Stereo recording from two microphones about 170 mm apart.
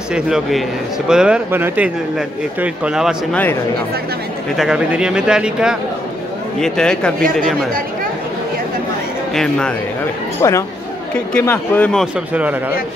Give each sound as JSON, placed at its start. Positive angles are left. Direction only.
{"t": 0.1, "sound": "speech", "side_deg": 0}
{"t": 4.6, "sound": "speech", "side_deg": -5}
{"t": 9.3, "sound": "speech", "side_deg": 5}
{"t": 10.4, "sound": "speech", "side_deg": 20}